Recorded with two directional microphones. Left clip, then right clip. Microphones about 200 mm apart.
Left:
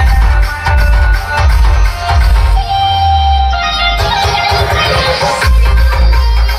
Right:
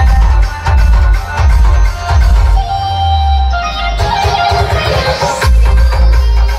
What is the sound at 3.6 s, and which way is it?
Music, 5° right (ahead or behind).